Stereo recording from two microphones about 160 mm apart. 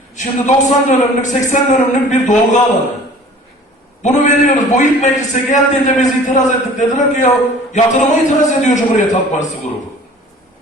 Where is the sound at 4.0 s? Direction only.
50° left (ahead or behind).